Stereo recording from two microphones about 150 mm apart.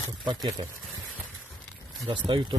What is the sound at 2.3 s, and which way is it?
Speech, 30° right (ahead or behind).